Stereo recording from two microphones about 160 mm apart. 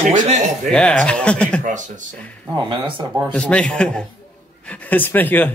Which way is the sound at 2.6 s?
30° right (ahead or behind).